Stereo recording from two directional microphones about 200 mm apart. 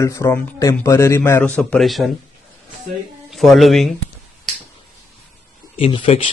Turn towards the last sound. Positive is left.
turn(degrees=25)  # may be behind; listen again after turning